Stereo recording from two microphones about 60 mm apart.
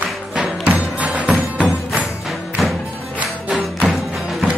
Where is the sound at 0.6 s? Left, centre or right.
Right.